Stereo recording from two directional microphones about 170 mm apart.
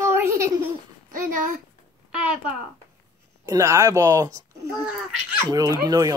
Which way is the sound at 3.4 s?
20° right (ahead or behind).